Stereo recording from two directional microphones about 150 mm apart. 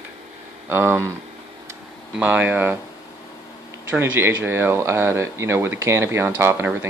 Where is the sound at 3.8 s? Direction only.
15° right (ahead or behind).